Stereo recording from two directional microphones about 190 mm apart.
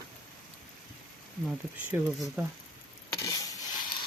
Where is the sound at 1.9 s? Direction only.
10° right (ahead or behind).